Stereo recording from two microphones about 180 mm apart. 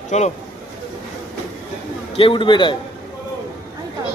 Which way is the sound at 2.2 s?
30° left (ahead or behind).